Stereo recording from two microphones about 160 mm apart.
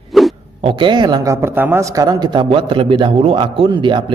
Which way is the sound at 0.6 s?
35° right (ahead or behind).